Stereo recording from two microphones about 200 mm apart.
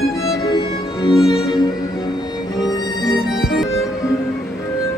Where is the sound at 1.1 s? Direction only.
5° right (ahead or behind).